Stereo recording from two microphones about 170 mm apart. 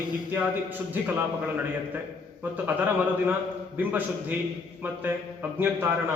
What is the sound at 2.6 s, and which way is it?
Speech, 10° right (ahead or behind).